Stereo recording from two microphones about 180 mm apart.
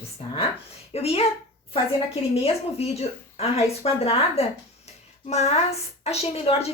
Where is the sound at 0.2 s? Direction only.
35° left (ahead or behind).